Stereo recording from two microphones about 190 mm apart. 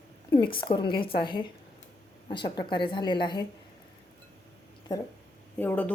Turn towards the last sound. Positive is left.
turn(degrees=10)  # may be behind; listen again after turning